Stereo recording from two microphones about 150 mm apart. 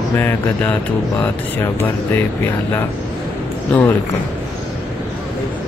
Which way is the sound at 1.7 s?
15° left (ahead or behind).